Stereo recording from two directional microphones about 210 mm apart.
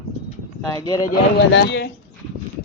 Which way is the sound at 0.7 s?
15° left (ahead or behind).